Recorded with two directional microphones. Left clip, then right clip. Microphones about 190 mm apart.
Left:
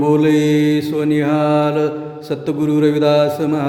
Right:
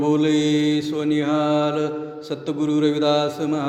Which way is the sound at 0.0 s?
30° left (ahead or behind).